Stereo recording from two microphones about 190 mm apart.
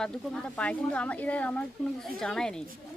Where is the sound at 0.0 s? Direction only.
5° left (ahead or behind).